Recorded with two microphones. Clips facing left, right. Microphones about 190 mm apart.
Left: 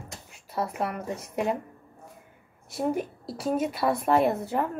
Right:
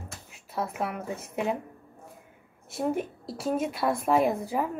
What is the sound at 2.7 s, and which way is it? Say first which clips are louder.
A woman's voice: left 1 dB; centre (ahead or behind).